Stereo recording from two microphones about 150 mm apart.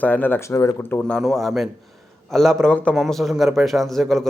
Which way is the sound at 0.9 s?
10° left (ahead or behind).